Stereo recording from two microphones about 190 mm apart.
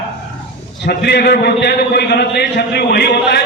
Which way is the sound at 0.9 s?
55° left (ahead or behind).